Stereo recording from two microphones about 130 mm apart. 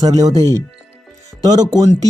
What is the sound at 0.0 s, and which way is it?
Speech, 30° right (ahead or behind).